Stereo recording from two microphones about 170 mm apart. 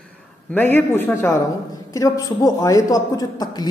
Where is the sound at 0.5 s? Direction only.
10° left (ahead or behind).